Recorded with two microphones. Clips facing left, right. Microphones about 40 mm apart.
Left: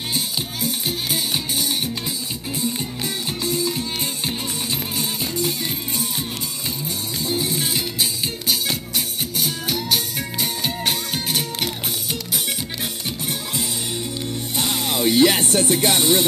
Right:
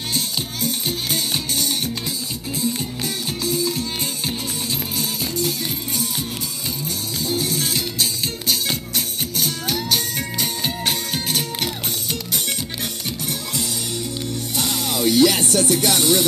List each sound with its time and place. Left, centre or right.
0.1 s music: centre
3.4 s music: left
4.9 s music: left
7.2 s music: left
14.6 s music: left